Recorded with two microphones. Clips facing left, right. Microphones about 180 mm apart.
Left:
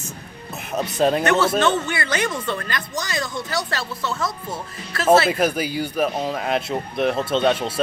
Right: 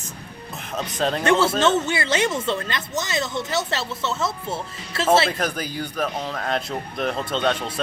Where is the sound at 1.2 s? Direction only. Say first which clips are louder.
Even; 30° right (ahead or behind).